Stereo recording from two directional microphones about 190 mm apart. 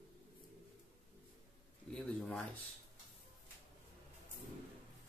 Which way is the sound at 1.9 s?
5° left (ahead or behind).